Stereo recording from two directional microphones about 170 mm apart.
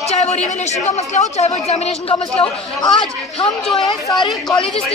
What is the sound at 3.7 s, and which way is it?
Speech, 25° left (ahead or behind).